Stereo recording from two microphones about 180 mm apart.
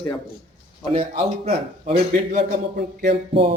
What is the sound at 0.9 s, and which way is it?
A man's voice, 35° right (ahead or behind).